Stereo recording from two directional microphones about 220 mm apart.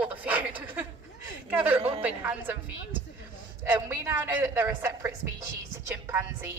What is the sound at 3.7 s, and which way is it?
A woman's voice, 10° right (ahead or behind).